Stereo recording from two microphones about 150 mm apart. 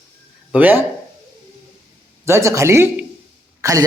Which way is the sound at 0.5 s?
10° right (ahead or behind).